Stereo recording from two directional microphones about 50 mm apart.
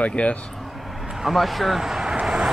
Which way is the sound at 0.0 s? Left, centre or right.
Left.